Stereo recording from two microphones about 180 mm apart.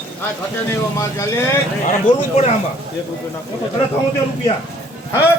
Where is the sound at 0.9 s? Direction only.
15° left (ahead or behind).